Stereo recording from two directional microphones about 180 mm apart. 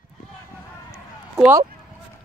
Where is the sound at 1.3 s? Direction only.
15° right (ahead or behind).